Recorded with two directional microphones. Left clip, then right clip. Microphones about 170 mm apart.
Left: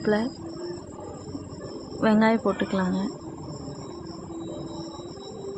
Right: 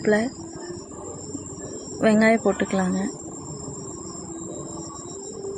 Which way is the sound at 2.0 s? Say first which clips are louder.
Right 3 dB; 15° right (ahead or behind).